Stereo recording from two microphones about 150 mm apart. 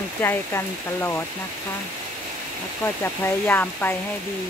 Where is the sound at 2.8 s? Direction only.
15° left (ahead or behind).